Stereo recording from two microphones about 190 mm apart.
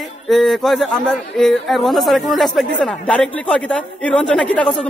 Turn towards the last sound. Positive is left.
turn(degrees=5)  # may be behind; listen again after turning